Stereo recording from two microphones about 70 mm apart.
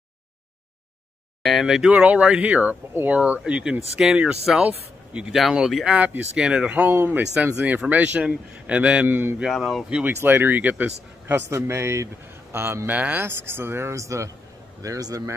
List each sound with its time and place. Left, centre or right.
1.4 s speech: centre
1.9 s speech: centre
5.3 s speech: centre
5.9 s speech: right
6.9 s a man's voice: right
7.5 s speech: centre
9.1 s a man's voice: right
9.5 s speech: centre
10.0 s speech: right
11.2 s a man's voice: right